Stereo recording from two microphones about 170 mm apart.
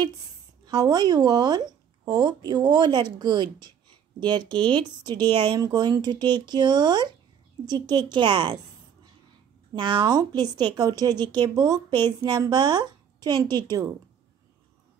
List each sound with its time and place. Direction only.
0.7 s speech: 25° right (ahead or behind)
9.8 s speech: 25° right (ahead or behind)